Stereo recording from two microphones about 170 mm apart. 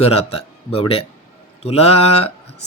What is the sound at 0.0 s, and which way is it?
Speech, 35° left (ahead or behind).